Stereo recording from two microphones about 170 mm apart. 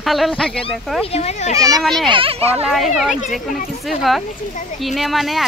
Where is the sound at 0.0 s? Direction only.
Centre (ahead or behind).